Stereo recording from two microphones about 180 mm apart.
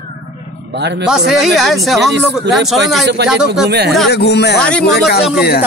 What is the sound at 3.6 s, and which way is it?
Speech, 65° right (ahead or behind).